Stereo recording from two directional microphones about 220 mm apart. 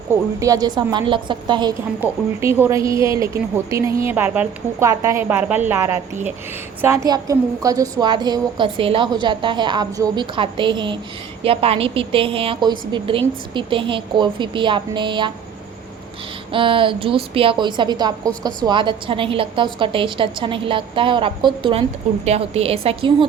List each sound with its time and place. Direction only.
0.1 s a woman's voice: 15° right (ahead or behind)
2.0 s a woman's voice: 10° right (ahead or behind)
16.5 s a woman's voice: 25° right (ahead or behind)